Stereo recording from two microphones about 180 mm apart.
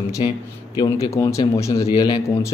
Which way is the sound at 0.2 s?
30° left (ahead or behind).